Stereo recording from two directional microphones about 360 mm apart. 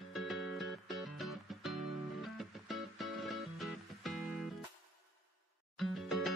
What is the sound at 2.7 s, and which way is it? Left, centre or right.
Music, centre.